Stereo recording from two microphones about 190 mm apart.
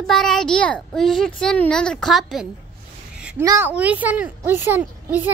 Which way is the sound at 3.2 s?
5° right (ahead or behind).